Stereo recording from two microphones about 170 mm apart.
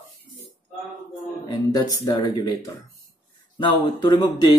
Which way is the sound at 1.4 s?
20° left (ahead or behind).